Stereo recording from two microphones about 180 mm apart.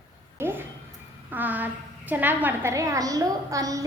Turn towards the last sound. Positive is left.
turn(degrees=-20)  # may be behind; listen again after turning